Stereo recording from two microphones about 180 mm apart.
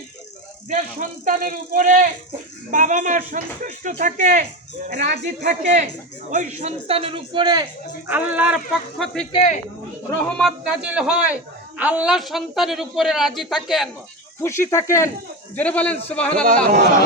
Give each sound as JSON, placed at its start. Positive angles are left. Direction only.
{"t": 0.7, "sound": "a man's voice", "side_deg": -45}
{"t": 8.0, "sound": "speech", "side_deg": -10}
{"t": 9.3, "sound": "speech", "side_deg": 35}
{"t": 10.2, "sound": "speech", "side_deg": 5}
{"t": 14.4, "sound": "a man's voice", "side_deg": 15}